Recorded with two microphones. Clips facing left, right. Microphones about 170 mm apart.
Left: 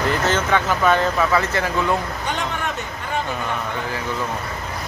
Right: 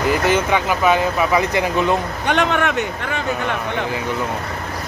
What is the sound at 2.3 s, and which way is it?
Speech, 70° right (ahead or behind).